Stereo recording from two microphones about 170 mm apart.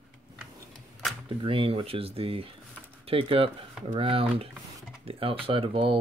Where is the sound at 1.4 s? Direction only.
30° right (ahead or behind).